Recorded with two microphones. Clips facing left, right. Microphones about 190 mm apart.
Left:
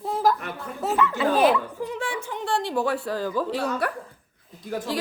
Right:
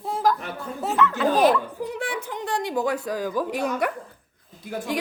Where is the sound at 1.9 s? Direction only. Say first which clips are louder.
Even; 15° right (ahead or behind).